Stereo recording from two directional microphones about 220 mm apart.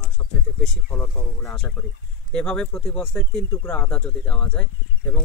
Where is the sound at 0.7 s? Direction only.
5° left (ahead or behind).